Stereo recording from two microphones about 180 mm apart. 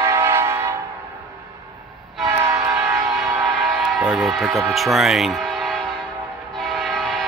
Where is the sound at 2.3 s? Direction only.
15° right (ahead or behind).